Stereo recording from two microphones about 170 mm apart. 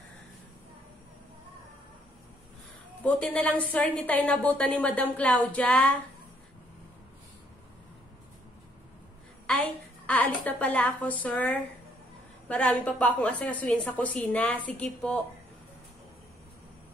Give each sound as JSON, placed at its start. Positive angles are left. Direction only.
{"t": 3.0, "sound": "a woman's voice", "side_deg": 10}
{"t": 9.5, "sound": "a woman's voice", "side_deg": 10}